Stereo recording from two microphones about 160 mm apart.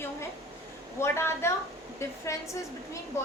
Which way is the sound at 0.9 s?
15° left (ahead or behind).